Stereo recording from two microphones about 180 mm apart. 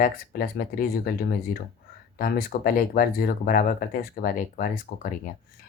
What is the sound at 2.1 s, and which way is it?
Speech, 55° left (ahead or behind).